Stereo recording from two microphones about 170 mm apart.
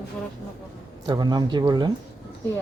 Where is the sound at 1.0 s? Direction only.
25° right (ahead or behind).